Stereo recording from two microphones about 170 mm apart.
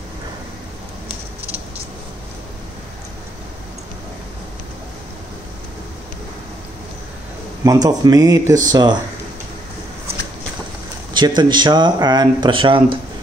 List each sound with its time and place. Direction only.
7.6 s speech: 20° right (ahead or behind)
11.1 s speech: 25° right (ahead or behind)